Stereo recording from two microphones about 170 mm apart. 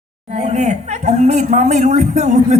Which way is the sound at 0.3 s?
40° right (ahead or behind).